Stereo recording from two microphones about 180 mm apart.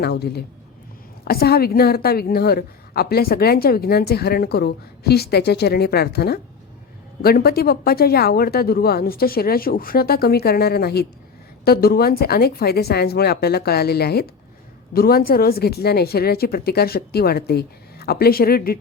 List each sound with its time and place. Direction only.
0.0 s a woman's voice: 65° left (ahead or behind)